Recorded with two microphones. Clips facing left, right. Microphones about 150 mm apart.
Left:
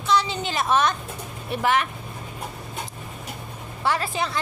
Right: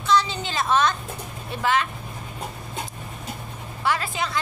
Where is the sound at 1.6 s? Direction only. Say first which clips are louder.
Left 1 dB; 20° left (ahead or behind).